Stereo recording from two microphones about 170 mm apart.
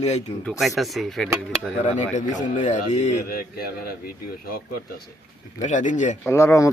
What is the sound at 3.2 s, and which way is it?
Speech, 60° left (ahead or behind).